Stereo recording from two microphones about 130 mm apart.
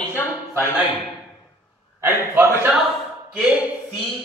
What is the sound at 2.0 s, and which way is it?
A man's voice, 15° right (ahead or behind).